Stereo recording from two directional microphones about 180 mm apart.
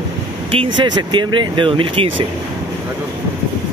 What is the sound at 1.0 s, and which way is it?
Speech, 25° right (ahead or behind).